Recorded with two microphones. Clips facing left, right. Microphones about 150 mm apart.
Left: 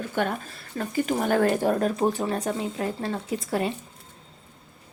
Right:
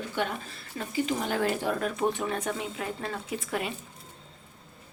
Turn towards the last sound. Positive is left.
turn(degrees=35)  # may be behind; listen again after turning